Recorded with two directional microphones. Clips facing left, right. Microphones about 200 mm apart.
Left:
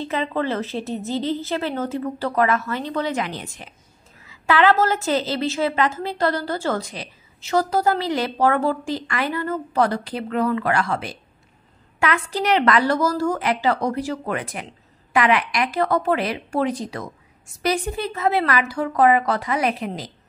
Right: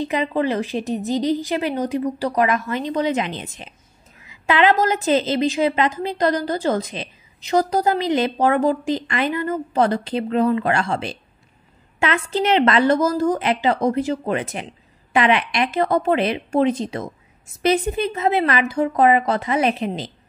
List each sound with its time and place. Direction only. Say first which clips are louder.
0.0 s a woman's voice: right 3 dB; 15° right (ahead or behind)